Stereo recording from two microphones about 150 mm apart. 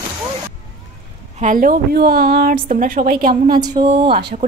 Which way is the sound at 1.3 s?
60° right (ahead or behind).